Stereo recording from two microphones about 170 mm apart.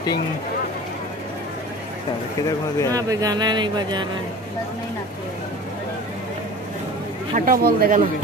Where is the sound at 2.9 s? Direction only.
20° right (ahead or behind).